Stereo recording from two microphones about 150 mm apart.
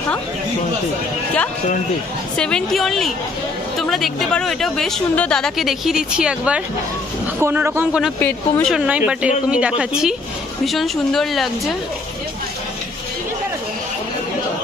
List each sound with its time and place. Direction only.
2.3 s a woman's voice: 5° left (ahead or behind); by 8.0 s 15° right (ahead or behind)
8.2 s speech: 10° left (ahead or behind)
8.7 s a woman's voice: 10° right (ahead or behind)